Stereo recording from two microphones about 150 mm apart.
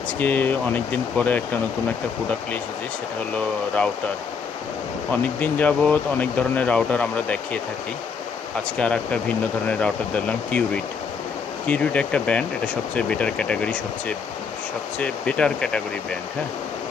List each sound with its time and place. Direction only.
0.2 s speech: 10° left (ahead or behind)
5.1 s speech: 10° left (ahead or behind)
8.8 s speech: 5° left (ahead or behind)
11.6 s speech: 10° left (ahead or behind)